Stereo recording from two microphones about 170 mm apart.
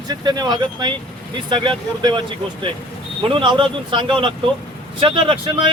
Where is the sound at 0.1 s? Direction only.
25° right (ahead or behind).